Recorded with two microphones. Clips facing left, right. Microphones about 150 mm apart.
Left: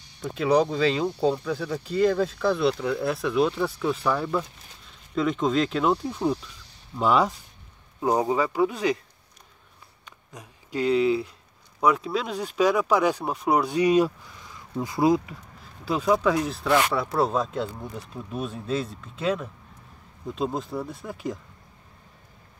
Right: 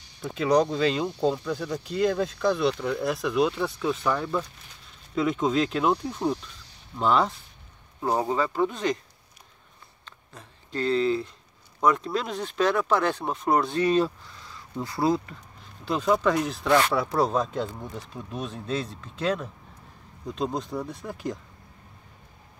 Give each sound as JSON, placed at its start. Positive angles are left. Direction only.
{"t": 0.2, "sound": "speech", "side_deg": 0}
{"t": 10.0, "sound": "speech", "side_deg": 10}